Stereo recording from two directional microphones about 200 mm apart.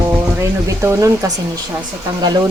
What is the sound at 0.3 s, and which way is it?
Speech, 15° right (ahead or behind).